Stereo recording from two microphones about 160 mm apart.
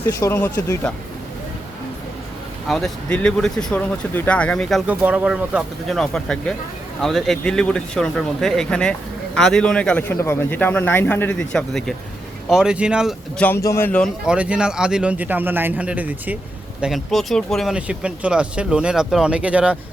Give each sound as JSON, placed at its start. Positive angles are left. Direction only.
{"t": 0.0, "sound": "speech", "side_deg": 15}
{"t": 2.6, "sound": "speech", "side_deg": 0}
{"t": 4.9, "sound": "speech", "side_deg": -10}
{"t": 13.4, "sound": "speech", "side_deg": 15}
{"t": 14.3, "sound": "speech", "side_deg": -5}